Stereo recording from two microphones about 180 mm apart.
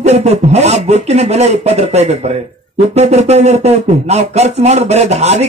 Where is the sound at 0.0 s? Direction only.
35° right (ahead or behind).